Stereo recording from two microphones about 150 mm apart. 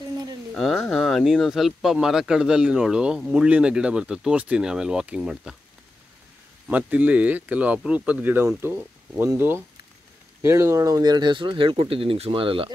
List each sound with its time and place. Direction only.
0.6 s speech: centre (ahead or behind)
6.7 s speech: 10° right (ahead or behind); by 12.7 s 35° right (ahead or behind)